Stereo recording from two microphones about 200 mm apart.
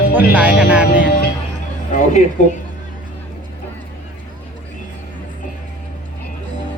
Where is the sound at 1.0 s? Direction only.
50° left (ahead or behind).